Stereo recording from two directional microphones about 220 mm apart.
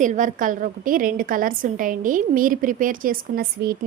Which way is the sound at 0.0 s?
35° right (ahead or behind).